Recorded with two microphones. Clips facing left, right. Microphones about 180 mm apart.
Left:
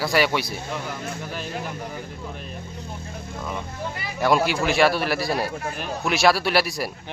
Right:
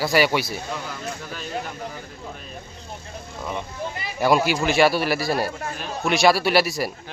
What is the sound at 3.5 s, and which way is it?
Speech, 20° right (ahead or behind).